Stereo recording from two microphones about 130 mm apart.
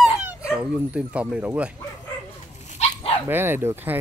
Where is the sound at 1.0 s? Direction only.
10° right (ahead or behind).